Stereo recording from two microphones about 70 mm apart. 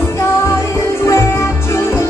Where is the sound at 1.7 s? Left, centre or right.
Left.